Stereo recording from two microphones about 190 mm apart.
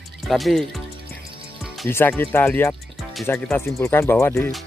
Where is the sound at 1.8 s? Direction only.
10° left (ahead or behind).